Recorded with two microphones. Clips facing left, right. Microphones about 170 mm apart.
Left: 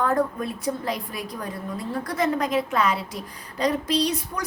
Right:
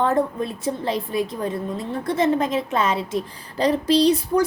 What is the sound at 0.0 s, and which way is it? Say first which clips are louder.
A woman's voice: right 3 dB; 25° right (ahead or behind).